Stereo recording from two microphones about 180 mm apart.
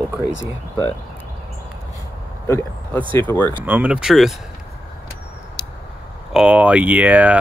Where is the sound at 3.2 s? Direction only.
10° left (ahead or behind).